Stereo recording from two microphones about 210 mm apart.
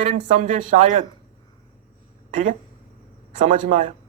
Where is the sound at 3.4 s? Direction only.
35° right (ahead or behind).